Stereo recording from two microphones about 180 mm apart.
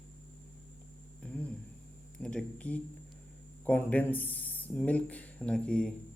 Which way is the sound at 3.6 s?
10° left (ahead or behind).